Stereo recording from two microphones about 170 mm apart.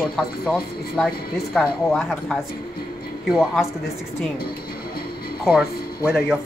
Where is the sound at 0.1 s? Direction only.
Centre (ahead or behind).